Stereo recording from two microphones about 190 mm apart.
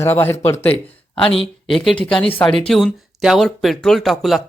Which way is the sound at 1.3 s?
30° left (ahead or behind).